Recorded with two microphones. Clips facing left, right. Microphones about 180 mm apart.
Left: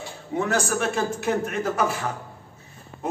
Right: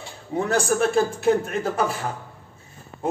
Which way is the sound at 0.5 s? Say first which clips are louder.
Right 5 dB; 30° right (ahead or behind).